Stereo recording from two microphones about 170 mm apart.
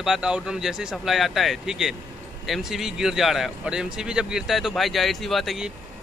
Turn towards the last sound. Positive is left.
turn(degrees=0)  # may be behind; listen again after turning